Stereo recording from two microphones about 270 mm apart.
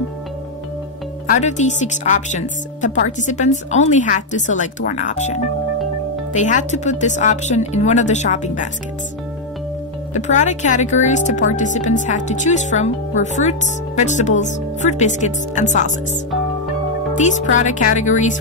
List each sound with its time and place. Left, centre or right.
1.3 s speech: left
10.1 s speech: left
17.1 s speech: left